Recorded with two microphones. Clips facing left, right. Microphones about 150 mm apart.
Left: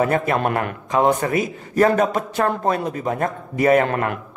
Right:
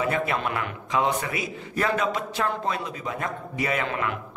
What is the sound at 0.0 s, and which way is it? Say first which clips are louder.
A man's voice: left 7 dB; 50° left (ahead or behind).